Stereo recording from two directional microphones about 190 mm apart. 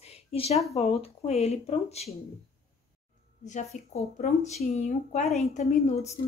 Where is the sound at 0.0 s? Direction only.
30° left (ahead or behind).